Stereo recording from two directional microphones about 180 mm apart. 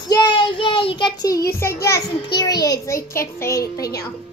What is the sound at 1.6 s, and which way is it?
A child's voice, 15° left (ahead or behind).